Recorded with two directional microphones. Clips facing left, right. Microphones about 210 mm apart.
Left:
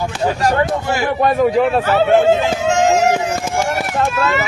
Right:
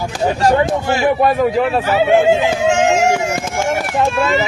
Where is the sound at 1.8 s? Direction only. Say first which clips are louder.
Even; 15° right (ahead or behind).